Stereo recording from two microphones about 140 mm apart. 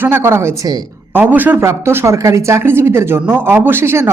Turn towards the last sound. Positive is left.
turn(degrees=-15)  # may be behind; listen again after turning